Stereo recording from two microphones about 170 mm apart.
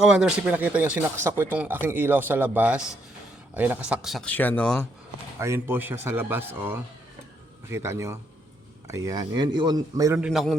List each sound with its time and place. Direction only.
0.0 s speech: 5° right (ahead or behind)
5.4 s speech: 15° right (ahead or behind)
10.2 s speech: 5° right (ahead or behind)